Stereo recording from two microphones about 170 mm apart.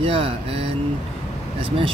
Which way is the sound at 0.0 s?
35° right (ahead or behind).